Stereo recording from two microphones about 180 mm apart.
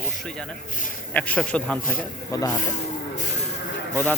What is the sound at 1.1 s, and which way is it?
Speech, 5° left (ahead or behind).